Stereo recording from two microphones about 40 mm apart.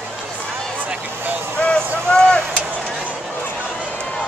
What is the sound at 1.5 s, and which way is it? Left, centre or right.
Vehicle, left.